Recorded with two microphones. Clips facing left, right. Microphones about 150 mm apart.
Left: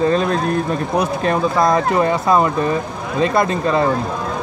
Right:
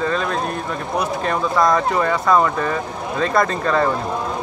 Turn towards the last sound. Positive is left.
turn(degrees=15)  # may be behind; listen again after turning